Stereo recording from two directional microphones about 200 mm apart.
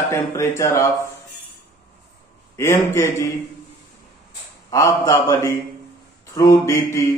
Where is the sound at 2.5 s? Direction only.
15° left (ahead or behind).